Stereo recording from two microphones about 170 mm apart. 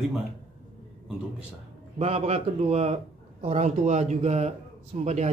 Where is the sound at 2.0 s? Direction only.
40° right (ahead or behind).